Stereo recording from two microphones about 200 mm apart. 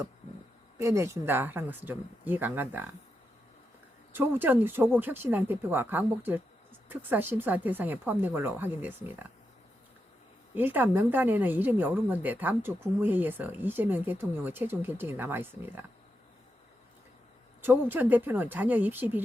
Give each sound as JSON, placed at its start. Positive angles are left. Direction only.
{"t": 0.8, "sound": "speech", "side_deg": -15}
{"t": 4.1, "sound": "speech", "side_deg": -10}
{"t": 10.5, "sound": "speech", "side_deg": -10}
{"t": 17.6, "sound": "speech", "side_deg": -10}